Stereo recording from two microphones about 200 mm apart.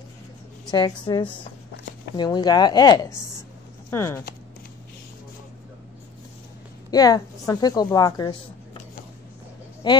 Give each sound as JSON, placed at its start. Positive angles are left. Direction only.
{"t": 0.7, "sound": "a woman's voice", "side_deg": 20}
{"t": 6.9, "sound": "a woman's voice", "side_deg": 20}
{"t": 9.8, "sound": "a woman's voice", "side_deg": 20}